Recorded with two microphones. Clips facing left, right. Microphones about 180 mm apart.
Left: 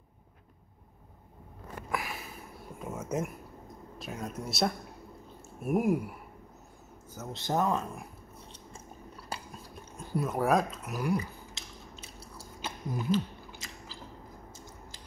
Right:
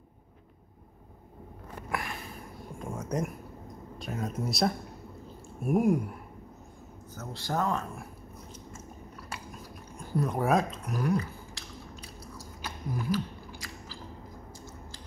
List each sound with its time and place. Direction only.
1.9 s a sound: 5° left (ahead or behind)
4.0 s speech: centre (ahead or behind)
7.2 s speech: 20° left (ahead or behind)
9.3 s cutlery: 30° left (ahead or behind)
10.1 s speech: 5° left (ahead or behind)
11.5 s biting: 25° left (ahead or behind)